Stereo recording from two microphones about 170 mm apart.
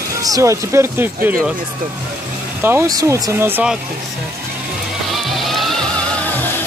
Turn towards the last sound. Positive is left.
turn(degrees=0)  # may be behind; listen again after turning